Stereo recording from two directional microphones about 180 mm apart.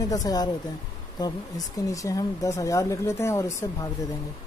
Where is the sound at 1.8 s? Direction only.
20° left (ahead or behind).